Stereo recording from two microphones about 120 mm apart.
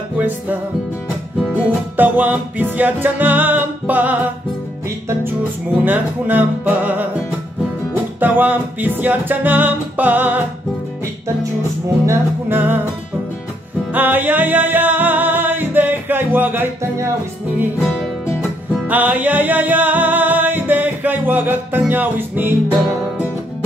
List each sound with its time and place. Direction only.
1.5 s music: 15° right (ahead or behind)
5.9 s music: 15° right (ahead or behind)
8.2 s music: 15° right (ahead or behind)
12.1 s music: 15° right (ahead or behind)
13.9 s music: 15° right (ahead or behind)
18.9 s music: 15° right (ahead or behind)